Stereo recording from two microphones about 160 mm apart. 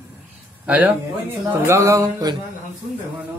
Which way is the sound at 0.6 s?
10° right (ahead or behind).